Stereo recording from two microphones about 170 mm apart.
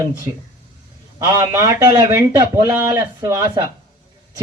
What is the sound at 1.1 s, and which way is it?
Speech, 20° right (ahead or behind).